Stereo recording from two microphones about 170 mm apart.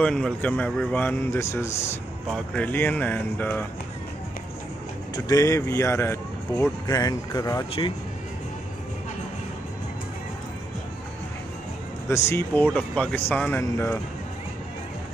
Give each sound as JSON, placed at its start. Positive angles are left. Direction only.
{"t": 0.0, "sound": "speech", "side_deg": 5}
{"t": 5.1, "sound": "speech", "side_deg": 20}
{"t": 12.3, "sound": "speech", "side_deg": 15}